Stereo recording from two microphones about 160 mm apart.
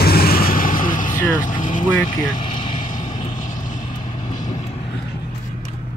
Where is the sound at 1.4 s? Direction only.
55° left (ahead or behind).